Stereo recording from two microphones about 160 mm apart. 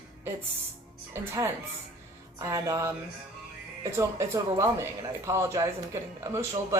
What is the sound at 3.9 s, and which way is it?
A woman's voice, 20° right (ahead or behind).